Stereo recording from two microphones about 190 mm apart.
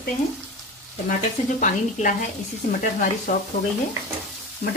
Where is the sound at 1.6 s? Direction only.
45° left (ahead or behind).